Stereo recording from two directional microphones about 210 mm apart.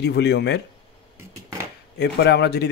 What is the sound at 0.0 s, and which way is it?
Speech, 55° left (ahead or behind).